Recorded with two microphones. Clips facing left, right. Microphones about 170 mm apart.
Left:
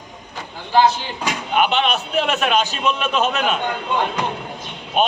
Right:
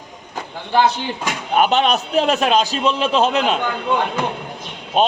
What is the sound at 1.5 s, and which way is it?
A man's voice, 40° right (ahead or behind).